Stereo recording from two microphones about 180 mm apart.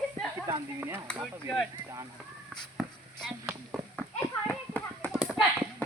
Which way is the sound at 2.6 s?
Centre (ahead or behind).